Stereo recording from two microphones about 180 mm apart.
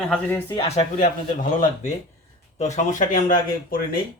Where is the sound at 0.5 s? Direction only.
35° left (ahead or behind); by 3.9 s 50° left (ahead or behind).